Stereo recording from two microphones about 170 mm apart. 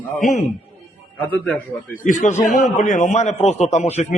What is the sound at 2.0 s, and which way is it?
A man's voice, 45° left (ahead or behind).